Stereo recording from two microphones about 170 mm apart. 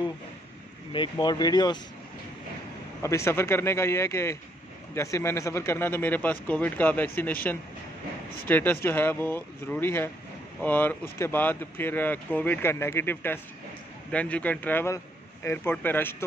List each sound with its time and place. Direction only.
0.9 s speech: 25° left (ahead or behind)
3.0 s speech: 15° left (ahead or behind)
8.5 s speech: 10° left (ahead or behind)